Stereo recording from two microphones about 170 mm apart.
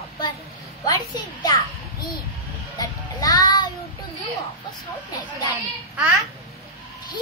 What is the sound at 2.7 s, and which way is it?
Music, 20° left (ahead or behind).